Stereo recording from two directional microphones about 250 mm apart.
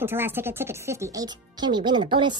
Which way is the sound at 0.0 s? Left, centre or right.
Centre.